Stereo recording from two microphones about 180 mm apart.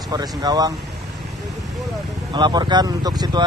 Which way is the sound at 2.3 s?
25° right (ahead or behind).